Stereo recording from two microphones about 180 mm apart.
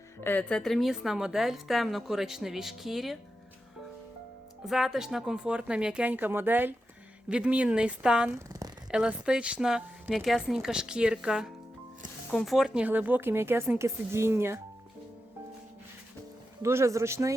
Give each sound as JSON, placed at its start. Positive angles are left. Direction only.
{"t": 0.2, "sound": "a woman's voice", "side_deg": 10}
{"t": 4.6, "sound": "a woman's voice", "side_deg": 0}
{"t": 8.9, "sound": "a woman's voice", "side_deg": -5}
{"t": 16.6, "sound": "speech", "side_deg": -15}